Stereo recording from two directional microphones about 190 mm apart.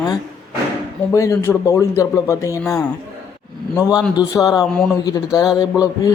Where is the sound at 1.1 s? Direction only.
15° left (ahead or behind).